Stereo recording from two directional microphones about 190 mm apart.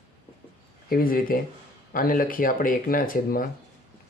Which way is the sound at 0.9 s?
50° left (ahead or behind).